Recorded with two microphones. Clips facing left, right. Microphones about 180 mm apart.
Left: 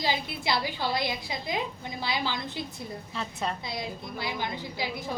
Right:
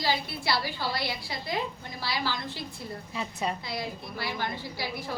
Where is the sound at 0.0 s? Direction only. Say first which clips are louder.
Even; 20° left (ahead or behind).